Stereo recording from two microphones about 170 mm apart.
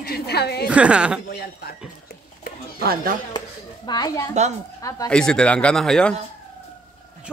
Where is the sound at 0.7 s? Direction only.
5° right (ahead or behind).